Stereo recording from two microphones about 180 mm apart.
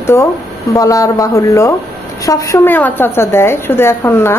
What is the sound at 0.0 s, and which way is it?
A woman's voice, 15° left (ahead or behind).